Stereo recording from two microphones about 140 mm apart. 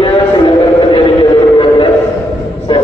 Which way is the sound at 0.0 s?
40° left (ahead or behind).